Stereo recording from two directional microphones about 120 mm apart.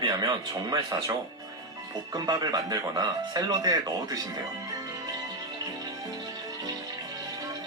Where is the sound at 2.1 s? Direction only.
35° right (ahead or behind).